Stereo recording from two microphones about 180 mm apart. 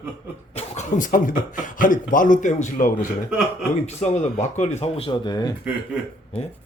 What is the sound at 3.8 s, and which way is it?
Speech, 40° left (ahead or behind).